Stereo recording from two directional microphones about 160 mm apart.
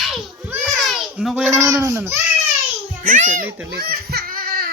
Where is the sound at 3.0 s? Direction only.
55° right (ahead or behind).